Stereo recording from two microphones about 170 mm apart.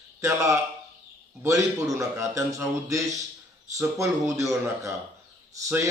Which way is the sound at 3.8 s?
15° right (ahead or behind).